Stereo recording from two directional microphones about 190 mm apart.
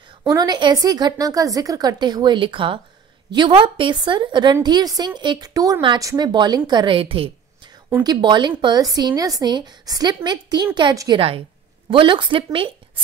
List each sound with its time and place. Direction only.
0.2 s a woman's voice: 20° right (ahead or behind)